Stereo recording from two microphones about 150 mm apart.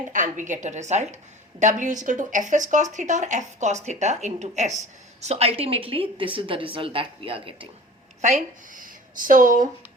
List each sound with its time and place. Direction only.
0.1 s a woman's voice: 55° right (ahead or behind); by 7.7 s 35° right (ahead or behind)
8.2 s speech: 55° right (ahead or behind)